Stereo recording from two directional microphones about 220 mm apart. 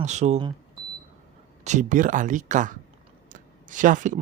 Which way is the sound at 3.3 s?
35° right (ahead or behind).